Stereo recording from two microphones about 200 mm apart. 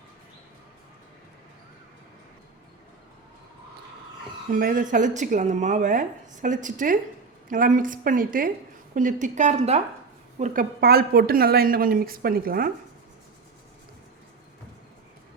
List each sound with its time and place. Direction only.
4.5 s a woman's voice: 45° right (ahead or behind)